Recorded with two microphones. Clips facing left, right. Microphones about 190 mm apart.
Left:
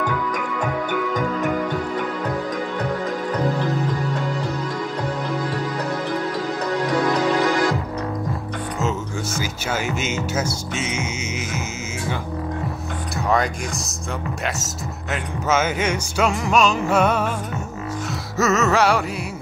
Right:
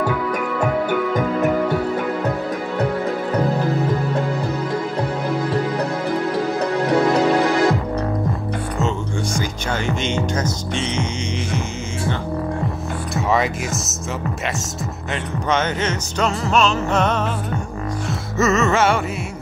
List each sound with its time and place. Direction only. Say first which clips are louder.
6.9 s music: right 4 dB; 35° right (ahead or behind)
8.7 s speech: right 1 dB; 5° left (ahead or behind)
13.1 s speech: right 1 dB; centre (ahead or behind)
15.5 s music: left 1 dB; 10° left (ahead or behind)
18.4 s music: right 1 dB; centre (ahead or behind)